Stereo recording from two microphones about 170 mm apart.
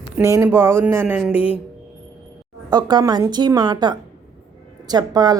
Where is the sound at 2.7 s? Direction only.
25° right (ahead or behind).